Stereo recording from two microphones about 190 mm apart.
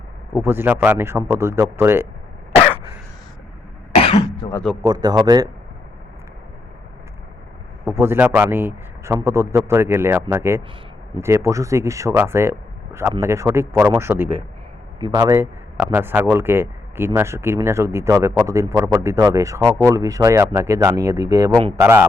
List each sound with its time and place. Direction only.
0.3 s speech: 10° right (ahead or behind)
3.9 s throat clearing: 30° left (ahead or behind)
4.8 s a man's voice: 20° right (ahead or behind)
7.9 s speech: 15° right (ahead or behind)